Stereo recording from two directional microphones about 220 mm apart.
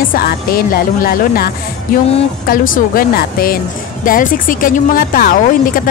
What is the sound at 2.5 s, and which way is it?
Speech, 40° left (ahead or behind).